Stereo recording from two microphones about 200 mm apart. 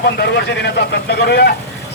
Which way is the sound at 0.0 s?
55° left (ahead or behind).